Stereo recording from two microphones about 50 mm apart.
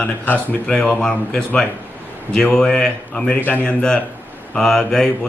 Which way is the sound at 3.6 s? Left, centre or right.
Centre.